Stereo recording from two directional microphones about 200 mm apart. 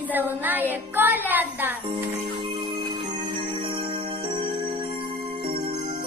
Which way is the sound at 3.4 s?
25° right (ahead or behind).